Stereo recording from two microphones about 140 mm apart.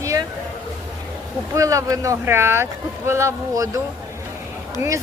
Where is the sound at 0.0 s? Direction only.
25° right (ahead or behind).